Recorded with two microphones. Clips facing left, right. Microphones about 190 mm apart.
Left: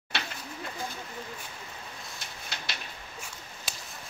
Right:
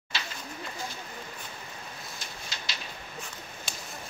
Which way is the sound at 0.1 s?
60° left (ahead or behind).